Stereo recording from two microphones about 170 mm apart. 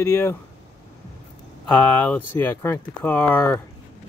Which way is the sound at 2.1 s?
15° left (ahead or behind).